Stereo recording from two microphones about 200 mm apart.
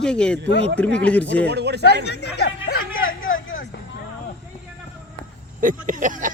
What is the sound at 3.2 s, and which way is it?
Vehicle, 75° left (ahead or behind).